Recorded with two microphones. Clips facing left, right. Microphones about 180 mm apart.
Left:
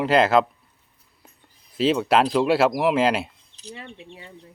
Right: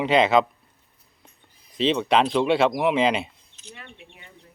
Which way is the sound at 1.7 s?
5° left (ahead or behind).